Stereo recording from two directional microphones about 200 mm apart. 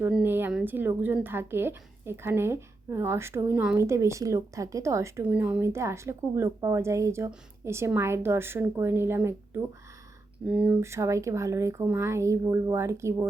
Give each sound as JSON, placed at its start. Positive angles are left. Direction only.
{"t": 0.0, "sound": "speech", "side_deg": -10}